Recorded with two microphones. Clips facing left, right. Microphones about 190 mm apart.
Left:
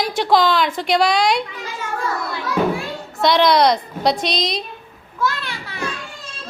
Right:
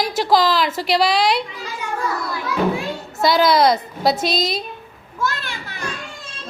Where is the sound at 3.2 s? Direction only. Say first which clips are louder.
Even; centre (ahead or behind).